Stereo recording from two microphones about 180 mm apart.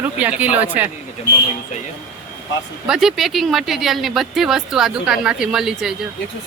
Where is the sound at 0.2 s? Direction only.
10° right (ahead or behind).